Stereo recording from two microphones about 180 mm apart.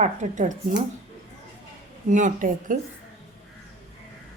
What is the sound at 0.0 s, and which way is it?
Speech, 45° right (ahead or behind).